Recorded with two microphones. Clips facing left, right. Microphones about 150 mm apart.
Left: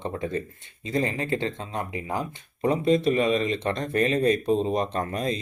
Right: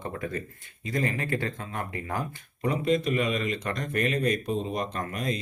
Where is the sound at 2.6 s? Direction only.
30° left (ahead or behind).